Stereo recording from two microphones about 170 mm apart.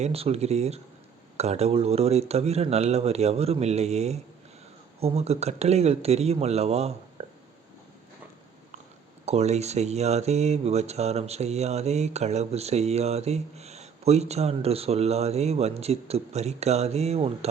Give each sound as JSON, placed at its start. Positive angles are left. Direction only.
{"t": 0.0, "sound": "speech", "side_deg": -35}
{"t": 9.2, "sound": "speech", "side_deg": -40}